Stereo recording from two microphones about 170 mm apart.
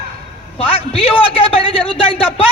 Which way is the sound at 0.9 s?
35° left (ahead or behind).